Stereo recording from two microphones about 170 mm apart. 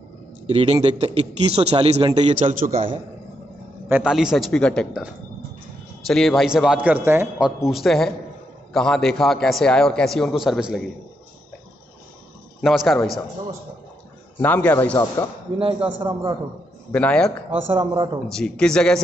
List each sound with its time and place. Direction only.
0.5 s a man's voice: 35° right (ahead or behind)
2.4 s a man's voice: 55° right (ahead or behind)
3.9 s a man's voice: 5° right (ahead or behind)
6.0 s a man's voice: centre (ahead or behind)
12.6 s a man's voice: centre (ahead or behind)
14.4 s a man's voice: 10° left (ahead or behind)
16.0 s speech: 30° right (ahead or behind)
16.9 s a man's voice: 5° left (ahead or behind)
17.5 s speech: 30° right (ahead or behind)
18.3 s a man's voice: 5° left (ahead or behind)